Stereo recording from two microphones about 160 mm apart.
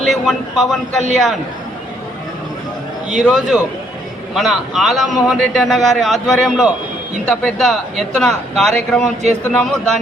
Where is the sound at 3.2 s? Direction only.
5° right (ahead or behind).